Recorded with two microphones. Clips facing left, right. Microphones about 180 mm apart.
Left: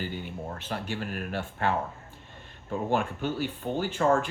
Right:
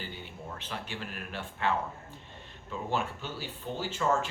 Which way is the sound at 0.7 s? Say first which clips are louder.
Left 7 dB; 45° left (ahead or behind).